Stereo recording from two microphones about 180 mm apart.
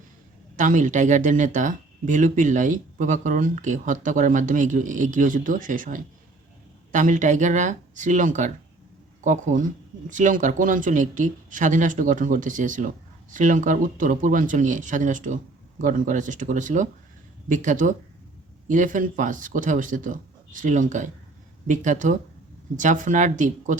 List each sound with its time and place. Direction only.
0.5 s speech: 45° right (ahead or behind)